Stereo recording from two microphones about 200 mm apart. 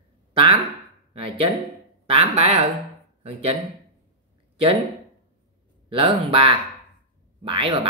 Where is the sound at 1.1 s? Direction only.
25° right (ahead or behind).